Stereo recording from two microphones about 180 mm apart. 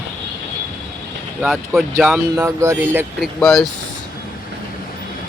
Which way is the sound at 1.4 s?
Centre (ahead or behind).